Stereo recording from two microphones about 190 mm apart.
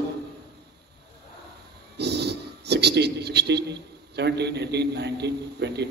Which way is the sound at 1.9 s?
60° right (ahead or behind).